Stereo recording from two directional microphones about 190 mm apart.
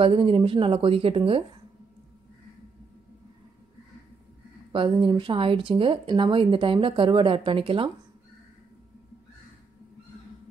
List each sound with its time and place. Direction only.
0.0 s speech: 30° right (ahead or behind)
4.7 s speech: 25° right (ahead or behind)